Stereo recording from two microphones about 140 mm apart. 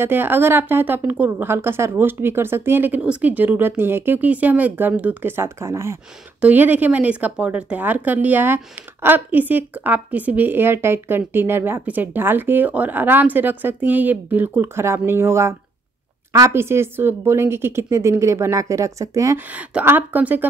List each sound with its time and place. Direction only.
0.0 s a woman's voice: 15° right (ahead or behind)